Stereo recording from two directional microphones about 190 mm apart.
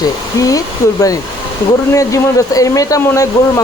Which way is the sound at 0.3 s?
20° left (ahead or behind).